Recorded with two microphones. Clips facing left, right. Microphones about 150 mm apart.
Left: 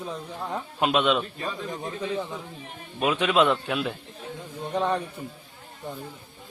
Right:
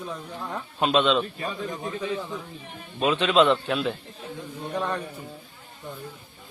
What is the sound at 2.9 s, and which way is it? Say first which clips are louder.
Speech: right 2 dB; 10° left (ahead or behind).